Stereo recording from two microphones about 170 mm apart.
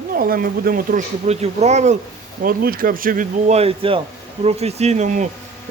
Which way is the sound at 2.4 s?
60° right (ahead or behind).